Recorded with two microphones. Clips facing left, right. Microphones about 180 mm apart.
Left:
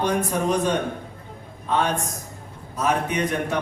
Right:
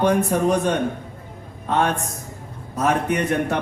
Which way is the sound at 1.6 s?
50° right (ahead or behind).